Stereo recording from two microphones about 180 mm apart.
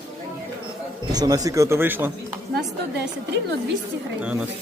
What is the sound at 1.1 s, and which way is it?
Speech, 20° right (ahead or behind).